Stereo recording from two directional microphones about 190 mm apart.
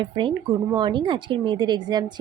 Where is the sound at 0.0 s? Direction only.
25° right (ahead or behind).